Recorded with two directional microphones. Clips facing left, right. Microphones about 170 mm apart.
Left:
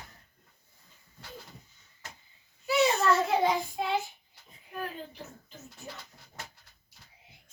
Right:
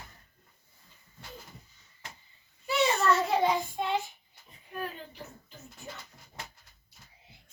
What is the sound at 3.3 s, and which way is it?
Speech, 5° left (ahead or behind).